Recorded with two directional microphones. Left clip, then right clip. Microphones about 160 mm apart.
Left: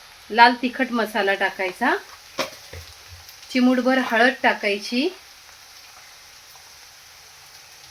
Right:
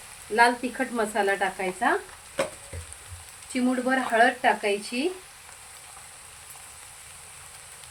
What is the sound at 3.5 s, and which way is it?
Speech, 65° left (ahead or behind).